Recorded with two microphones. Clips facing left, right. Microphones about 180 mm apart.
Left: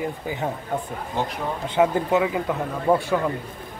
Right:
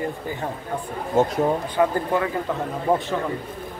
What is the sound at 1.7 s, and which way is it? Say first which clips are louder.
Speech: left 1 dB; 15° left (ahead or behind).